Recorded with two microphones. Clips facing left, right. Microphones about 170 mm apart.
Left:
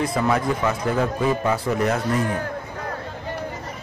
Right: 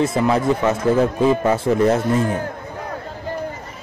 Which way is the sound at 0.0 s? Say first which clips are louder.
Right 4 dB; 25° right (ahead or behind).